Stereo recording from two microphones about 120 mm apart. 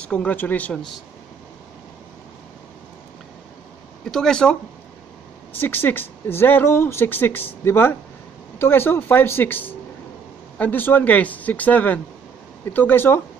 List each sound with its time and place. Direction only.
0.0 s speech: 10° left (ahead or behind)
4.0 s speech: 5° left (ahead or behind)
5.6 s speech: 15° left (ahead or behind)